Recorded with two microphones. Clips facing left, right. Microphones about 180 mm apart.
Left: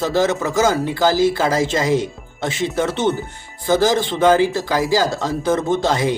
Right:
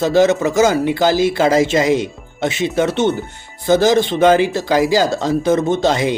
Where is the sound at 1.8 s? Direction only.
70° right (ahead or behind).